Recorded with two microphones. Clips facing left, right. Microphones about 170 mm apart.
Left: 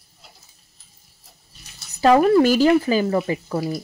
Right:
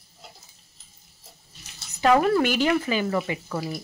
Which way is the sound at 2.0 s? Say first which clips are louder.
Left 5 dB; 30° left (ahead or behind).